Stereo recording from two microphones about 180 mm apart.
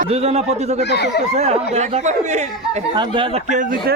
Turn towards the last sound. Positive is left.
turn(degrees=-45)  # may be behind; listen again after turning